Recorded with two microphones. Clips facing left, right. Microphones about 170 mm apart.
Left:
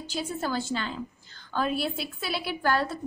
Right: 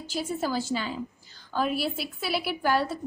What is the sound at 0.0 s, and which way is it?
A woman's voice, 5° right (ahead or behind).